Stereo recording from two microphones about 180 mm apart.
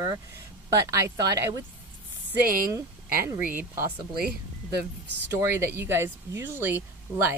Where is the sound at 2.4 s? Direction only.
50° right (ahead or behind).